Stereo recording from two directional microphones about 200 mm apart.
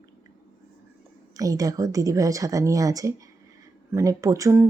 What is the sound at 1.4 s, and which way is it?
A woman's voice, 15° right (ahead or behind).